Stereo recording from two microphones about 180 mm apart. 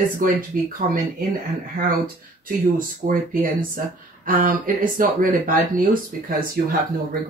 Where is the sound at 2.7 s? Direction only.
50° right (ahead or behind).